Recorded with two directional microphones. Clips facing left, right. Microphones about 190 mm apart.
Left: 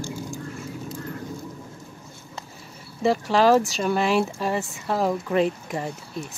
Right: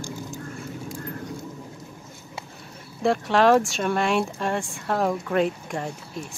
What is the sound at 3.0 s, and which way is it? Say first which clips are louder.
Speech: even; centre (ahead or behind).